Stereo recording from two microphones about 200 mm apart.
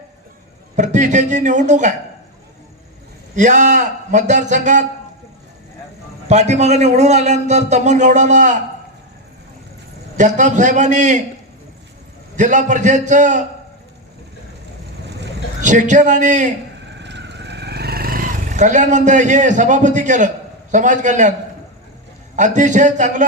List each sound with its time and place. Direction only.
0.8 s speech: 35° right (ahead or behind)
3.3 s speech: 40° right (ahead or behind)
6.2 s speech: 35° right (ahead or behind)
10.2 s speech: 40° right (ahead or behind)
12.4 s speech: 35° right (ahead or behind)
15.6 s speech: 40° right (ahead or behind)
17.0 s a sound: 60° right (ahead or behind); by 21.3 s 40° right (ahead or behind)
22.4 s speech: 40° right (ahead or behind)